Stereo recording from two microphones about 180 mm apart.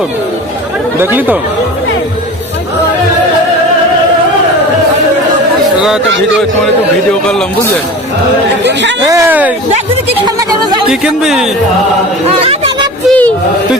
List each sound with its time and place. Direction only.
0.9 s speech: 10° right (ahead or behind)
8.6 s speech: 75° right (ahead or behind)
9.0 s speech: 15° right (ahead or behind)
10.8 s speech: 5° right (ahead or behind)
12.5 s a sound: 30° right (ahead or behind)
13.1 s a sound: 10° left (ahead or behind)